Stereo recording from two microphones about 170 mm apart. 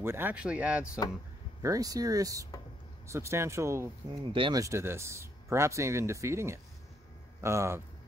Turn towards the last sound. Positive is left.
turn(degrees=-15)  # may be behind; listen again after turning